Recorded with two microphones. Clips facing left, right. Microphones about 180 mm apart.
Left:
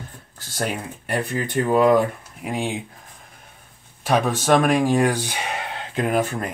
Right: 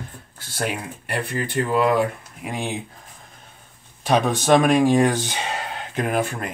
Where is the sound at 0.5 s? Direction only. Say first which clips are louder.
Even; 45° left (ahead or behind).